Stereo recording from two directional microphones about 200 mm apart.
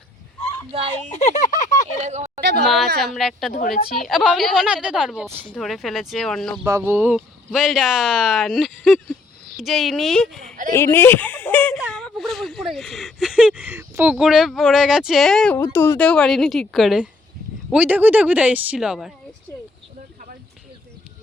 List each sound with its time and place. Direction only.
1.1 s speech: 35° left (ahead or behind)
2.0 s a sound: 35° right (ahead or behind)
2.4 s a sound: 55° right (ahead or behind)
2.6 s speech: centre (ahead or behind)
6.7 s speech: 15° right (ahead or behind)
10.7 s speech: 10° left (ahead or behind)
15.5 s speech: 15° left (ahead or behind); by 19.1 s 5° right (ahead or behind)